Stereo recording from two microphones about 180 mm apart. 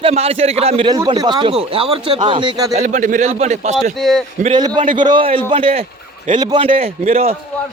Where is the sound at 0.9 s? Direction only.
25° right (ahead or behind).